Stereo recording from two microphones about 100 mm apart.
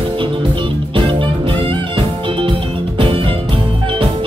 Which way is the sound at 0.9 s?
60° right (ahead or behind).